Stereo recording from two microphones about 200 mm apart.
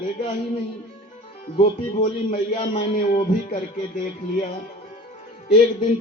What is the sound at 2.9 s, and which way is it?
Speech, 40° left (ahead or behind).